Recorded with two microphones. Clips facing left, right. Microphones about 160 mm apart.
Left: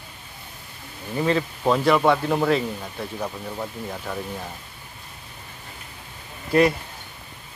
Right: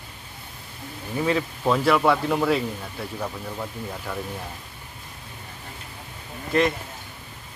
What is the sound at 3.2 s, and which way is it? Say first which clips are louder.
Speech: left 1 dB; 10° left (ahead or behind).